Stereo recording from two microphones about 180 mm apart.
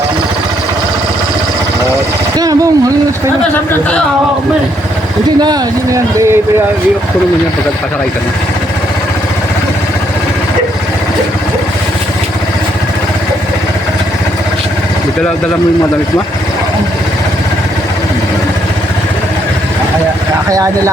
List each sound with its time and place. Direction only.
2.4 s speech: 20° right (ahead or behind)
5.4 s speech: 20° right (ahead or behind)
20.5 s speech: 20° right (ahead or behind)